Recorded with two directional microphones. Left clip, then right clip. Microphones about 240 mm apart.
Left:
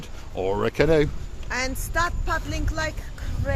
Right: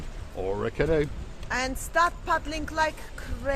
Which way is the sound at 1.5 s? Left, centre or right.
Centre.